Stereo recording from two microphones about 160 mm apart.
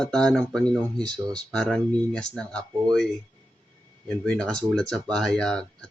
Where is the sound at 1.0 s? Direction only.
25° right (ahead or behind).